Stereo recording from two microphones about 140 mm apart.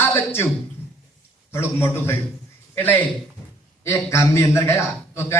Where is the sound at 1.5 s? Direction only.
20° left (ahead or behind).